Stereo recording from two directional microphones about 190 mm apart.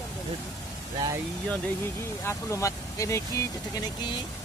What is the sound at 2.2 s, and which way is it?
Speech, 15° left (ahead or behind).